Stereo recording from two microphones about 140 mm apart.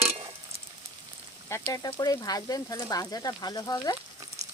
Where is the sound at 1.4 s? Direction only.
20° left (ahead or behind).